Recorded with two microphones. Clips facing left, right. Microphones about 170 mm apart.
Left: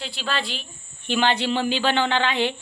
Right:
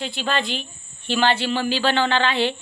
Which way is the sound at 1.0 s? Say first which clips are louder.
Right 1 dB; 15° left (ahead or behind).